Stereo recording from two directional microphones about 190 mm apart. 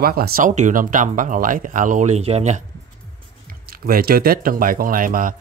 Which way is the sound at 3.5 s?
50° right (ahead or behind).